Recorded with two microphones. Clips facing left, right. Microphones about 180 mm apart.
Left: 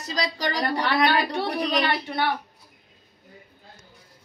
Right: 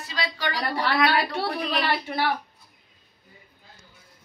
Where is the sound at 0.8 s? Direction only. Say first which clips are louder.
Even; 5° right (ahead or behind).